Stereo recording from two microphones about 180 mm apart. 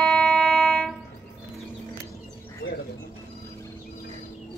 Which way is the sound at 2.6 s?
70° left (ahead or behind).